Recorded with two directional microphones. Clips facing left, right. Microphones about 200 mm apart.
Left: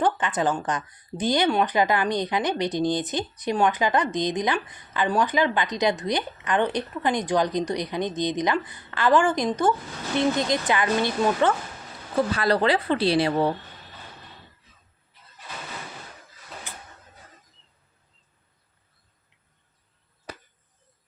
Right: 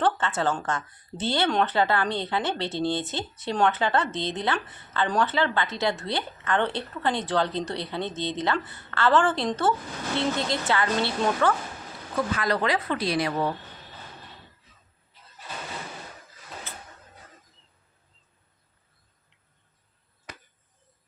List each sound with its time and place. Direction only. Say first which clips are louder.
0.0 s a woman's voice: left 1 dB; 15° left (ahead or behind)
12.1 s speech: left 4 dB; 35° left (ahead or behind)
16.7 s a sound: even; 15° left (ahead or behind)